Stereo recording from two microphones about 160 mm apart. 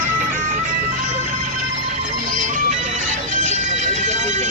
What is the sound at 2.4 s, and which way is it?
Music, 50° right (ahead or behind).